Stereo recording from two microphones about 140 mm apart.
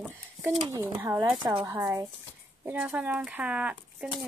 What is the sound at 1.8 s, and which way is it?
Speech, 20° right (ahead or behind).